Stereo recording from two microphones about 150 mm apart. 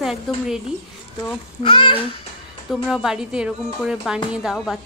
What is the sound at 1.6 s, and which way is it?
Speech, 35° left (ahead or behind).